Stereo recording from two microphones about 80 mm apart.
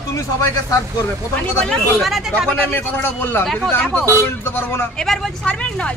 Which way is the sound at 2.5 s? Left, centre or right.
Left.